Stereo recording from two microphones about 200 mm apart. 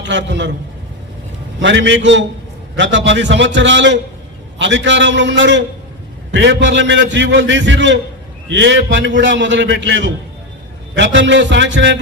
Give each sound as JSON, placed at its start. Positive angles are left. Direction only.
{"t": 0.0, "sound": "a man's voice", "side_deg": -65}
{"t": 1.6, "sound": "a man's voice", "side_deg": -65}